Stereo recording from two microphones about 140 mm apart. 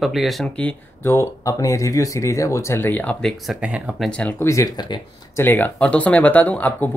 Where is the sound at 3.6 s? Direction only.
10° right (ahead or behind).